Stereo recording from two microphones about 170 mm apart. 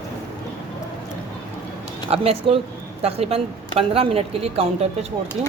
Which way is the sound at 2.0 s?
35° right (ahead or behind).